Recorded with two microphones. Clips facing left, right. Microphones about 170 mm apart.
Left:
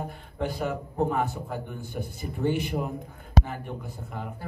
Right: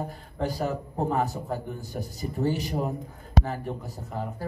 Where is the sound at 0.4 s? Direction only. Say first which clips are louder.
Right 1 dB; 40° right (ahead or behind).